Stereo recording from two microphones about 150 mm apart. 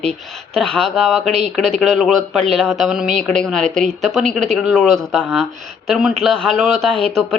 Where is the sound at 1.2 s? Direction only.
45° right (ahead or behind).